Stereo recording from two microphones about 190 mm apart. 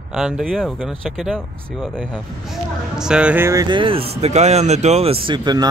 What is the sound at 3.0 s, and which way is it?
Speech, 5° right (ahead or behind).